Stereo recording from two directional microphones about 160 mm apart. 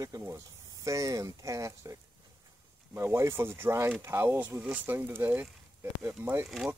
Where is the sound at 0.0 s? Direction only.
20° right (ahead or behind).